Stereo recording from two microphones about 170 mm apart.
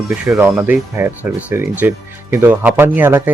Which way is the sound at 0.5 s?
15° right (ahead or behind).